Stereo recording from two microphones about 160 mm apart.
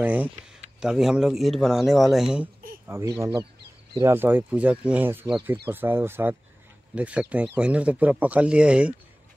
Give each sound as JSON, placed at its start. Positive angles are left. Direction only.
{"t": 0.0, "sound": "speech", "side_deg": -10}
{"t": 2.9, "sound": "speech", "side_deg": -15}